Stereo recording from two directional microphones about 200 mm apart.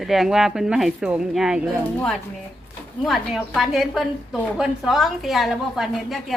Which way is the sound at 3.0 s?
Centre (ahead or behind).